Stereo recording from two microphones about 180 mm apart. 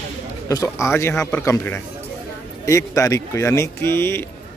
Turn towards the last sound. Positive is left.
turn(degrees=15)  # may be behind; listen again after turning